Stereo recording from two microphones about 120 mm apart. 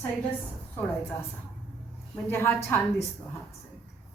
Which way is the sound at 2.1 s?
20° left (ahead or behind).